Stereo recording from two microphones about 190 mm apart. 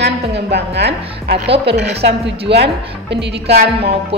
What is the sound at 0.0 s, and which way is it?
A woman's voice, 65° right (ahead or behind).